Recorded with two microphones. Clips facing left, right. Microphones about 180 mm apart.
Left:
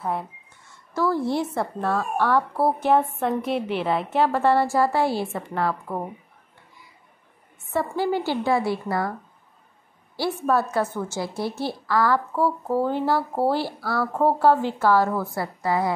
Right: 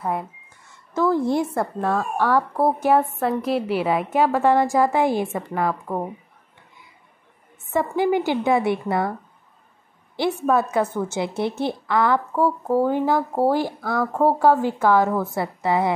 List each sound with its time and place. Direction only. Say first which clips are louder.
0.0 s a woman's voice: right 2 dB; centre (ahead or behind)
0.9 s a woman's voice: right 3 dB; 20° right (ahead or behind)
7.7 s a woman's voice: right 4 dB; 15° right (ahead or behind)
10.5 s a woman's voice: right 1 dB; 15° right (ahead or behind)